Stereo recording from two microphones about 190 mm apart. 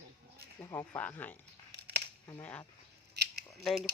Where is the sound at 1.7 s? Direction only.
60° right (ahead or behind).